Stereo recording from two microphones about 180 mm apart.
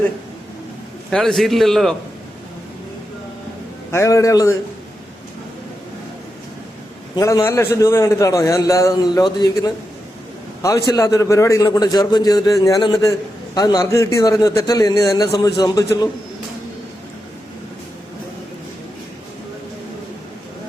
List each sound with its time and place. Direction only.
1.1 s a man's voice: centre (ahead or behind)
3.9 s a man's voice: 15° left (ahead or behind)
7.2 s a man's voice: 20° left (ahead or behind)